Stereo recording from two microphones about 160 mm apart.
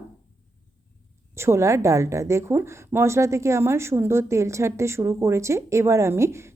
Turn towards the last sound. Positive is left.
turn(degrees=-15)  # may be behind; listen again after turning